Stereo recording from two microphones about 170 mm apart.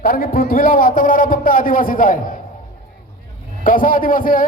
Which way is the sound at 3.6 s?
55° left (ahead or behind).